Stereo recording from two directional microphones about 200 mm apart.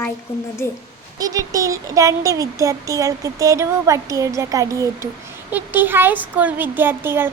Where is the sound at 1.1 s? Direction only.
20° right (ahead or behind).